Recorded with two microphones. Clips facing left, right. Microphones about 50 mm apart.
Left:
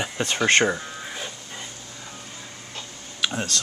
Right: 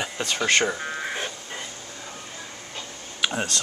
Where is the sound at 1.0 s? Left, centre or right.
Right.